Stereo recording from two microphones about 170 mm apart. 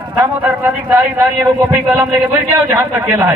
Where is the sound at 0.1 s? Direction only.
15° right (ahead or behind).